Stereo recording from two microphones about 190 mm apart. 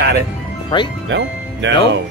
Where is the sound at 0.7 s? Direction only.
25° left (ahead or behind).